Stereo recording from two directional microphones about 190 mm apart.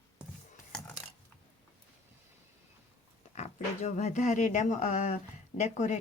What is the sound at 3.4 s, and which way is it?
Speech, 35° left (ahead or behind).